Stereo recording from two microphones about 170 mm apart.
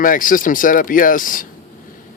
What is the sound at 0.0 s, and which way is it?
Speech, 55° left (ahead or behind).